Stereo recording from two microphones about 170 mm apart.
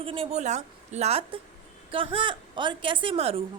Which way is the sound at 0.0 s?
30° right (ahead or behind).